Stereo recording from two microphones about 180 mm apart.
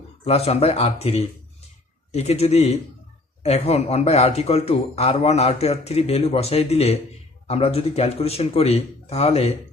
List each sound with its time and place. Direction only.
0.3 s a man's voice: 35° left (ahead or behind)